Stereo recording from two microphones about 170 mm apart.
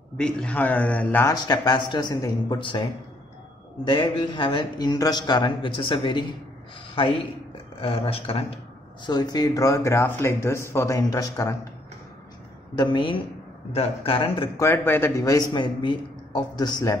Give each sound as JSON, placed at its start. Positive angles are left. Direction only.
{"t": 0.2, "sound": "speech", "side_deg": 5}
{"t": 1.3, "sound": "a man's voice", "side_deg": 25}
{"t": 7.8, "sound": "a man's voice", "side_deg": 35}
{"t": 12.7, "sound": "a man's voice", "side_deg": 30}
{"t": 14.6, "sound": "a man's voice", "side_deg": 15}